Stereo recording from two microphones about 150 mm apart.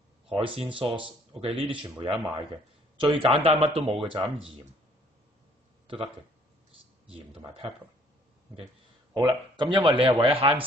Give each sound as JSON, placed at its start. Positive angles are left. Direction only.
{"t": 0.3, "sound": "speech", "side_deg": -35}
{"t": 7.1, "sound": "speech", "side_deg": -35}
{"t": 9.1, "sound": "speech", "side_deg": -30}